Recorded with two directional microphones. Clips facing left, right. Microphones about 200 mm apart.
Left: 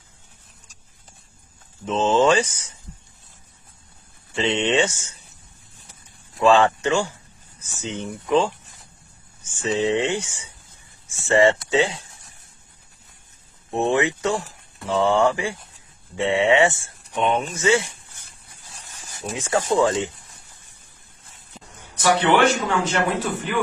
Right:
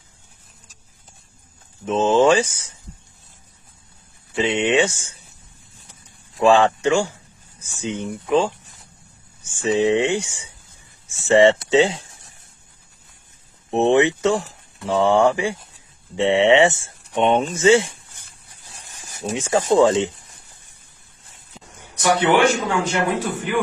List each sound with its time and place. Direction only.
1.9 s speech: 10° right (ahead or behind)
4.4 s speech: 10° right (ahead or behind)
6.4 s speech: 15° right (ahead or behind)
13.7 s speech: 20° right (ahead or behind)
21.9 s speech: 15° right (ahead or behind)